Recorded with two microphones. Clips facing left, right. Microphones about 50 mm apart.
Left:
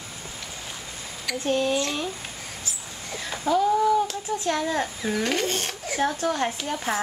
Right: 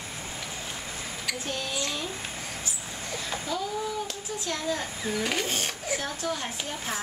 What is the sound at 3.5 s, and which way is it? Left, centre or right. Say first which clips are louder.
Speech: left 13 dB; left.